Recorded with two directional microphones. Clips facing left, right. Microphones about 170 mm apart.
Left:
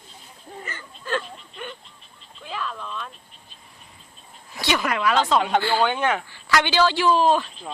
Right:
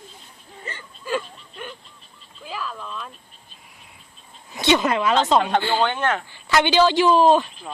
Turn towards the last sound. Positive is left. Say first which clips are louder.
# right 3 dB
turn(degrees=-20)  # may be behind; listen again after turning